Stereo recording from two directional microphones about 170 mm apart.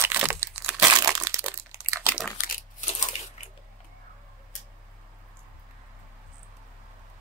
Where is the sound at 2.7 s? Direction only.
45° left (ahead or behind).